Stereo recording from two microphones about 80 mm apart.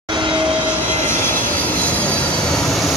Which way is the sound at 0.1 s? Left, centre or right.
Right.